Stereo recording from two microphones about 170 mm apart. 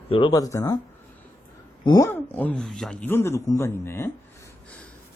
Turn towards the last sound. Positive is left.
turn(degrees=15)  # may be behind; listen again after turning